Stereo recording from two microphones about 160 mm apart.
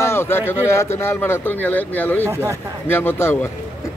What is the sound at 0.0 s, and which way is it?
Speech, 15° left (ahead or behind).